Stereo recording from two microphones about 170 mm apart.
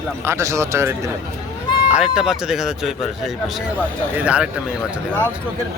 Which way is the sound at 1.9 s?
5° right (ahead or behind).